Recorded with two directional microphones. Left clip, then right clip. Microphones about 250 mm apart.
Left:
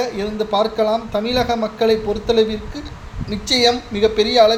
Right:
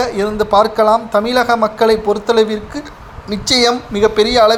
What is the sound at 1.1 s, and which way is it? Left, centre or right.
Speech, centre.